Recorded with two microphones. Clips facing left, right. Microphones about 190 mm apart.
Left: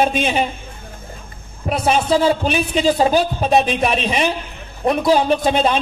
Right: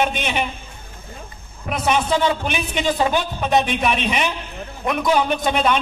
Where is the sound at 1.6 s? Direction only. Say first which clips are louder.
Left 3 dB; 30° left (ahead or behind).